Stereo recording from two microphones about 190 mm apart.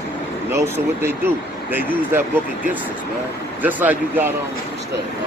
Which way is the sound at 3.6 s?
10° right (ahead or behind).